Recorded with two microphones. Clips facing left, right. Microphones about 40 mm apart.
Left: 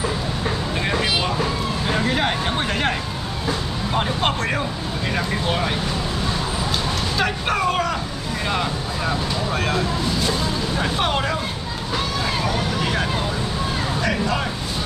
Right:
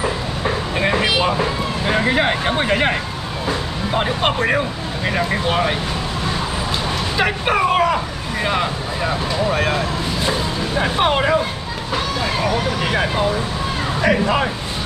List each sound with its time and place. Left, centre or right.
0.7 s vehicle: right
3.4 s speech: centre
7.2 s speech: centre
12.8 s speech: right